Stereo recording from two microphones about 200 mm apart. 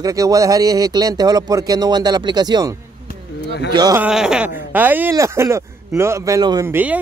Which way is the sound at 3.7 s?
20° right (ahead or behind).